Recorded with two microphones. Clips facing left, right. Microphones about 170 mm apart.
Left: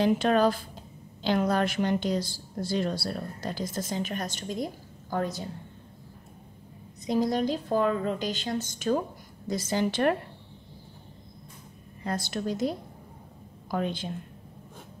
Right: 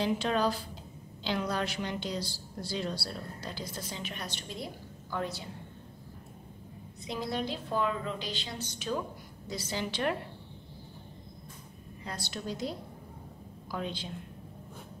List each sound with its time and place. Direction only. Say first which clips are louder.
0.0 s a woman's voice: left 6 dB; 50° left (ahead or behind)
7.1 s a woman's voice: left 9 dB; 40° left (ahead or behind)
12.0 s a woman's voice: left 8 dB; 50° left (ahead or behind)